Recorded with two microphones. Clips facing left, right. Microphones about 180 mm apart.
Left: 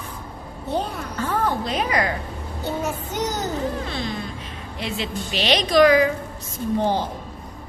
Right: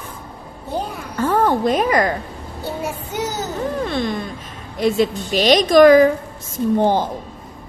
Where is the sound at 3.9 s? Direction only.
55° right (ahead or behind).